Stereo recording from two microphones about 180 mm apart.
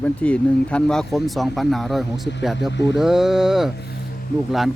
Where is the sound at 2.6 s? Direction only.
75° left (ahead or behind).